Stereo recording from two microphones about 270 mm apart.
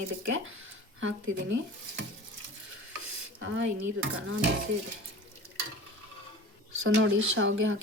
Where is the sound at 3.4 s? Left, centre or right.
Right.